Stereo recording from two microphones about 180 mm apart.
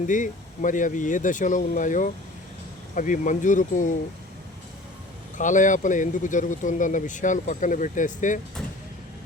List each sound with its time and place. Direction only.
0.1 s speech: 45° left (ahead or behind)
5.4 s speech: 45° left (ahead or behind)